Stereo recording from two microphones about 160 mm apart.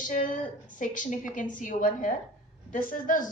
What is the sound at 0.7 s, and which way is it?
A woman's voice, 55° left (ahead or behind).